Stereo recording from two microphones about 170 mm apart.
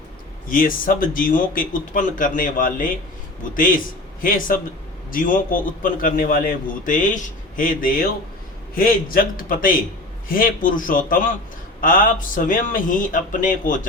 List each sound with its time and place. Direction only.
0.4 s a man's voice: 55° left (ahead or behind)